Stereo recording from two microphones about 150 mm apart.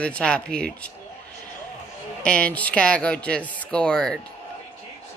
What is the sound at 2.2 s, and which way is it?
Speech, 10° left (ahead or behind).